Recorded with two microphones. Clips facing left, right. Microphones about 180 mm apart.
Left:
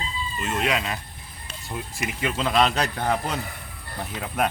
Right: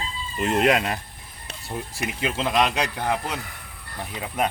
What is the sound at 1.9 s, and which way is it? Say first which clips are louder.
A man's voice: even; 25° right (ahead or behind).